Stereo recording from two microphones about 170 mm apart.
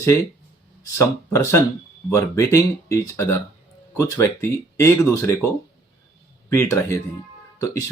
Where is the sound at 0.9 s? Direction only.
15° left (ahead or behind).